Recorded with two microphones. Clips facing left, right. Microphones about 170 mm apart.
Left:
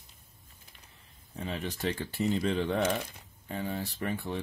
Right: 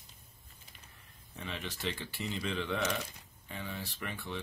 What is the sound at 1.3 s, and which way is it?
Speech, 35° left (ahead or behind).